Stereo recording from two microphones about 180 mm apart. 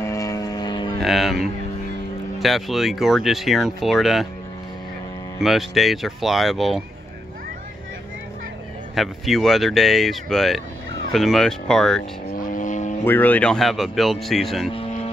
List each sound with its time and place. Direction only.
0.0 s music: 15° left (ahead or behind)
0.9 s speech: centre (ahead or behind)
5.4 s speech: centre (ahead or behind)
8.9 s speech: centre (ahead or behind)
12.4 s vehicle: 45° left (ahead or behind)
13.0 s speech: 10° left (ahead or behind)